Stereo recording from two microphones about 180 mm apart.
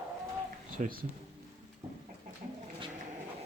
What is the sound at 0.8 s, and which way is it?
Speech, 40° right (ahead or behind).